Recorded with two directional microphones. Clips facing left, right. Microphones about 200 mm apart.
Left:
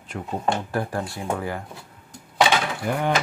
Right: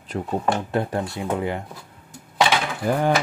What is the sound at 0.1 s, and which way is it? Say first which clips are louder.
Speech: right 5 dB; 35° right (ahead or behind).